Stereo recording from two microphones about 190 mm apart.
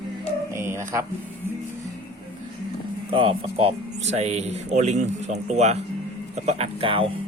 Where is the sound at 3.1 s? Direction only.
30° right (ahead or behind).